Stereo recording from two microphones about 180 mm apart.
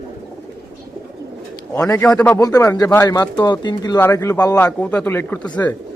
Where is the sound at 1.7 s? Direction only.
15° left (ahead or behind).